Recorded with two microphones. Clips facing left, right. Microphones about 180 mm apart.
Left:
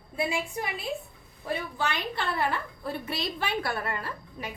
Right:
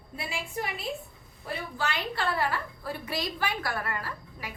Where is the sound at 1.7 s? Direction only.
20° left (ahead or behind).